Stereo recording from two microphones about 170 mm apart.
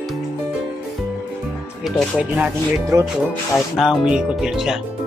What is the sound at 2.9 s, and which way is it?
Speech, 20° right (ahead or behind).